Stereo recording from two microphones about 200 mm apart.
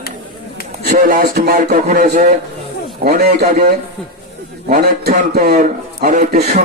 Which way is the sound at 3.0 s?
50° right (ahead or behind).